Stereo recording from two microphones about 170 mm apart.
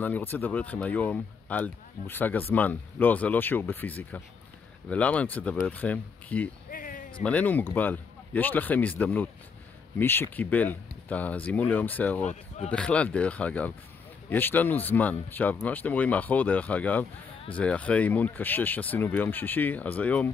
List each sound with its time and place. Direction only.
0.0 s speech: 10° left (ahead or behind)
6.7 s a sound: 55° left (ahead or behind)
7.2 s speech: 10° left (ahead or behind)
12.3 s speech: 40° left (ahead or behind)
12.7 s speech: 5° left (ahead or behind)